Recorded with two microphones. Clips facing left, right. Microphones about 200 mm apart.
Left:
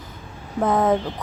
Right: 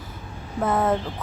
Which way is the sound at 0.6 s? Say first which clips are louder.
Left 3 dB; centre (ahead or behind).